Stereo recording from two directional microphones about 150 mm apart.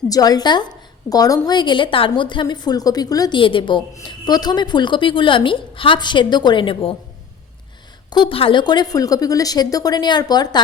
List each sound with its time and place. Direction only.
0.1 s a woman's voice: 25° left (ahead or behind)
8.1 s a woman's voice: 35° left (ahead or behind)